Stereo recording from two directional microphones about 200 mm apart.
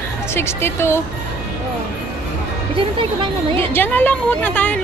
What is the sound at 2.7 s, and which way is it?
Speech, 25° right (ahead or behind).